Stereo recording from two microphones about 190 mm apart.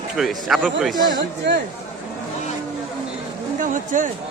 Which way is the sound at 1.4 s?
65° right (ahead or behind).